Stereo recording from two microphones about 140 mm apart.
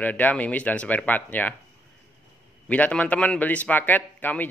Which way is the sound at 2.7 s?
10° left (ahead or behind).